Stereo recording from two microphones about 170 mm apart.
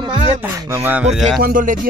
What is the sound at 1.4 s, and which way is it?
Speech, 55° right (ahead or behind).